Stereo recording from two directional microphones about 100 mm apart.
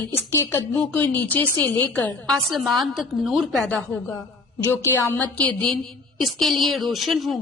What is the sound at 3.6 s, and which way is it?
Speech, 10° left (ahead or behind).